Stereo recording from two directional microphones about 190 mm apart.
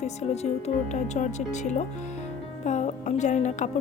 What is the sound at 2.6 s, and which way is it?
Music, 40° left (ahead or behind).